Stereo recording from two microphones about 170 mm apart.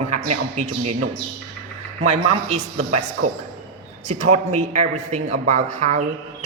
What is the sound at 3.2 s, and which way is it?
Speech, 90° right.